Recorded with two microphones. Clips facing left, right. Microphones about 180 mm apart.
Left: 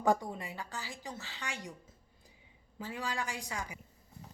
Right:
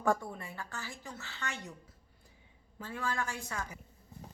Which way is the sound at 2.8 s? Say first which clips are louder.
Right 1 dB; 15° left (ahead or behind).